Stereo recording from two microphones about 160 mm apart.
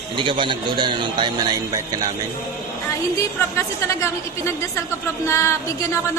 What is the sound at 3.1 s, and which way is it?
A woman's voice, 20° left (ahead or behind).